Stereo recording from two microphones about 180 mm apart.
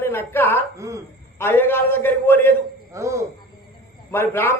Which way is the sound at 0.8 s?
15° right (ahead or behind).